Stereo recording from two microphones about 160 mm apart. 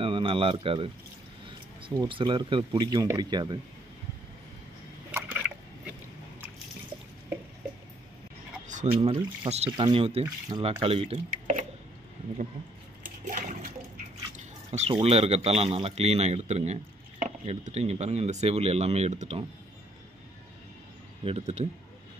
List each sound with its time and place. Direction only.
0.0 s speech: 35° right (ahead or behind)
5.1 s a sound: 10° right (ahead or behind)
8.9 s speech: 35° right (ahead or behind)
14.3 s speech: 35° right (ahead or behind)
21.2 s speech: 40° right (ahead or behind)